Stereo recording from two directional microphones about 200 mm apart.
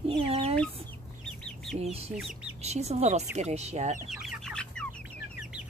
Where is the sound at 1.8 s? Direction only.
30° right (ahead or behind).